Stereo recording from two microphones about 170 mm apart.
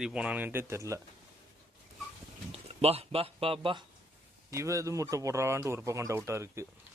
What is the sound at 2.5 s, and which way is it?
Speech, 35° right (ahead or behind).